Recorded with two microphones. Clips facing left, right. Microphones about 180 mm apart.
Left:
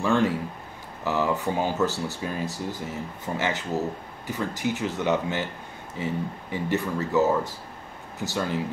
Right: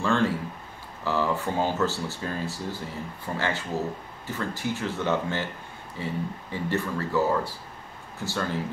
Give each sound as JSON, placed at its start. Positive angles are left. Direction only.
{"t": 0.0, "sound": "speech", "side_deg": 15}